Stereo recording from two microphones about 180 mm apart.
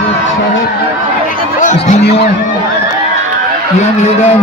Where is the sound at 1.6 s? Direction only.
40° left (ahead or behind).